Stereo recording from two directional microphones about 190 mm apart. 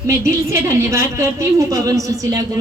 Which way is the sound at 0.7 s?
15° right (ahead or behind).